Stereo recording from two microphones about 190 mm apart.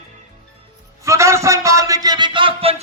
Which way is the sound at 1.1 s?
15° right (ahead or behind).